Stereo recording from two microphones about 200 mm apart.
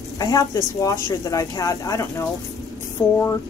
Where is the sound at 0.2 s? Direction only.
20° left (ahead or behind).